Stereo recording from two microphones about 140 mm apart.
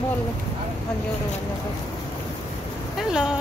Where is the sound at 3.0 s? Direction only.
5° right (ahead or behind).